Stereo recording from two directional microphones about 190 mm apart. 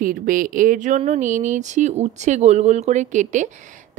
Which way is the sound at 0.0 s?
45° right (ahead or behind).